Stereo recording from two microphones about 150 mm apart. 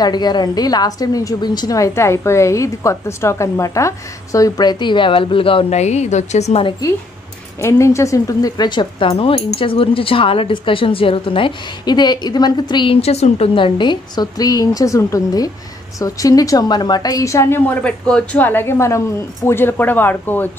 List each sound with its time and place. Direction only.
0.0 s a woman's voice: 30° left (ahead or behind); by 6.6 s 50° left (ahead or behind)
7.6 s a woman's voice: 20° left (ahead or behind)
17.8 s a woman's voice: 5° left (ahead or behind)